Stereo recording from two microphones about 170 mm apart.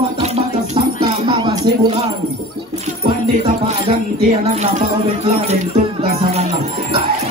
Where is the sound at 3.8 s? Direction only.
35° right (ahead or behind).